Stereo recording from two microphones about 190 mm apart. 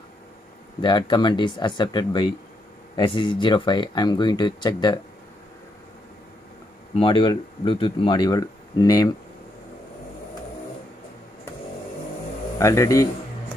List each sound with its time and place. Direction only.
0.7 s speech: 25° left (ahead or behind)
7.0 s speech: 25° left (ahead or behind)
12.5 s speech: 15° left (ahead or behind)